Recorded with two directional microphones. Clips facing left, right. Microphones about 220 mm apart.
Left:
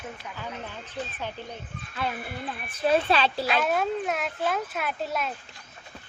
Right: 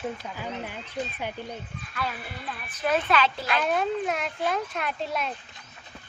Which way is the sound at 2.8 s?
30° left (ahead or behind).